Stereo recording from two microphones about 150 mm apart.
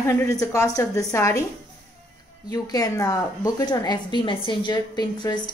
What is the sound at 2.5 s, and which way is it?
A woman's voice, 25° left (ahead or behind).